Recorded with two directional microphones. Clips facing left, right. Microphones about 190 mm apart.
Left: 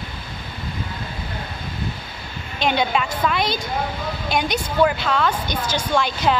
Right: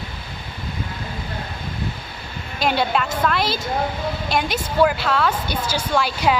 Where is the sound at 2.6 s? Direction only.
5° right (ahead or behind).